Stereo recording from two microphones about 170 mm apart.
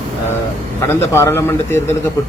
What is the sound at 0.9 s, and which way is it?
A man's voice, 15° left (ahead or behind).